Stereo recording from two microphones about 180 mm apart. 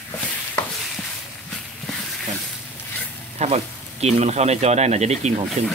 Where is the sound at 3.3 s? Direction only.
35° right (ahead or behind).